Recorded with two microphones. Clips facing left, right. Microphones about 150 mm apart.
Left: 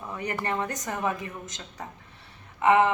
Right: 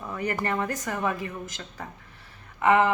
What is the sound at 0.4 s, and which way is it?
A woman's voice, 15° left (ahead or behind).